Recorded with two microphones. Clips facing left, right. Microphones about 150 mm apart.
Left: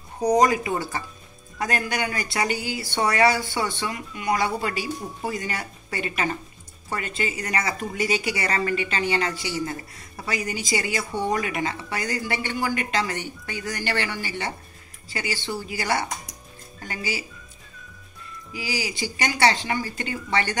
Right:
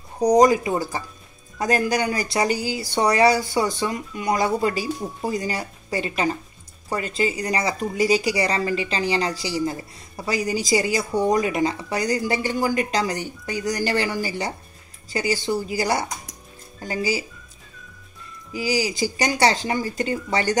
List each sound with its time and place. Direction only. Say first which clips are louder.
0.3 s speech: right 4 dB; 35° right (ahead or behind)
18.5 s speech: right 7 dB; 40° right (ahead or behind)